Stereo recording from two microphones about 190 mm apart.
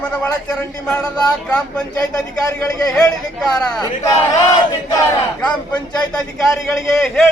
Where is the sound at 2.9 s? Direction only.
5° left (ahead or behind).